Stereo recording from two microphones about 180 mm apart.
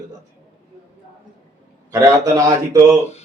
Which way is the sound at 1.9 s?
20° right (ahead or behind).